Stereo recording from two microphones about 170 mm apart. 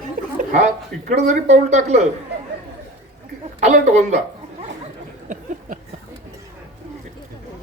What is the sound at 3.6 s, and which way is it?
Speech, 40° right (ahead or behind).